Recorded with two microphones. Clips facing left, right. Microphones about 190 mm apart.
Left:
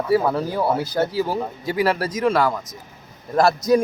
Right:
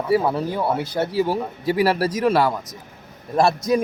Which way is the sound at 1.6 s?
30° right (ahead or behind).